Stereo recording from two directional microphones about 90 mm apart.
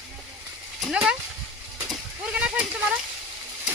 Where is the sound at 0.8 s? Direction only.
10° right (ahead or behind).